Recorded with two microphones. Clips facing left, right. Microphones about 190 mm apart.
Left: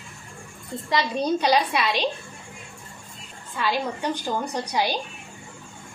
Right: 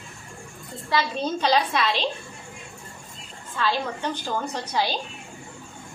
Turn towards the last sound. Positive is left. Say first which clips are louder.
# left 1 dB
turn(degrees=15)  # may be behind; listen again after turning